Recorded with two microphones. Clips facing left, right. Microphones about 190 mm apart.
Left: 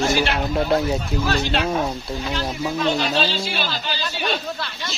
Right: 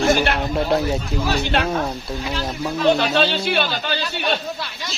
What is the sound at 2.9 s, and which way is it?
Speech, 60° right (ahead or behind).